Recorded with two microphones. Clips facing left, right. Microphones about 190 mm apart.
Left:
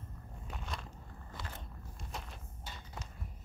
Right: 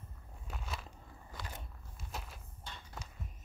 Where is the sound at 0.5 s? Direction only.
5° right (ahead or behind).